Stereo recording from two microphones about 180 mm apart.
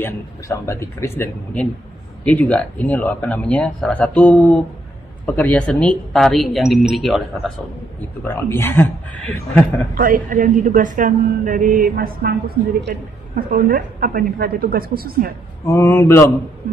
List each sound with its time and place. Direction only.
0.0 s speech: 15° left (ahead or behind)
8.2 s speech: 10° left (ahead or behind)
9.9 s a woman's voice: 50° right (ahead or behind)
15.6 s speech: 15° left (ahead or behind)